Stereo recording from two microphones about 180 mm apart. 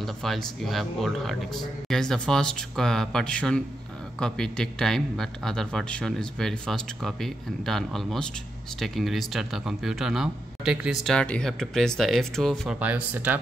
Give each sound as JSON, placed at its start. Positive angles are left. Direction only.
{"t": 0.0, "sound": "speech", "side_deg": 0}